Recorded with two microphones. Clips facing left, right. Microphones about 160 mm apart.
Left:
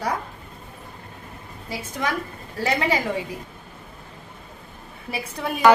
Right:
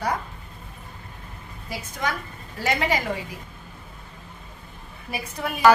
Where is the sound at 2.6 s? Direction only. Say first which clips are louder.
Left 1 dB; 30° left (ahead or behind).